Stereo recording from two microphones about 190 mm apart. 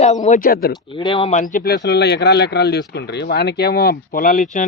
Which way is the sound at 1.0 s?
25° left (ahead or behind).